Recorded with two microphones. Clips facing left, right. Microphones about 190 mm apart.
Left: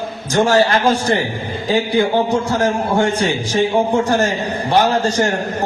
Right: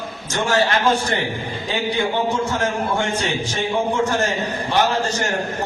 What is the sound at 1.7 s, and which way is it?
A man's voice, 35° left (ahead or behind).